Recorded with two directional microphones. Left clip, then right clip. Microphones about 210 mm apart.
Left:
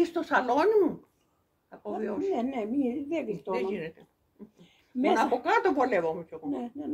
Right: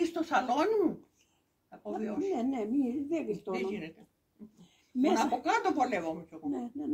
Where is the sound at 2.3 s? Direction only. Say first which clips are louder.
Left 2 dB; 15° right (ahead or behind).